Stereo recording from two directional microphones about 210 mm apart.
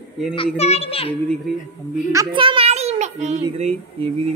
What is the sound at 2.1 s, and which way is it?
A child's voice, 20° right (ahead or behind).